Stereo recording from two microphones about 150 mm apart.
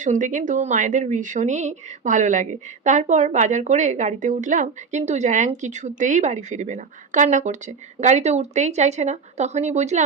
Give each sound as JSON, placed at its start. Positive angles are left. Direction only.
{"t": 0.0, "sound": "a woman's voice", "side_deg": -55}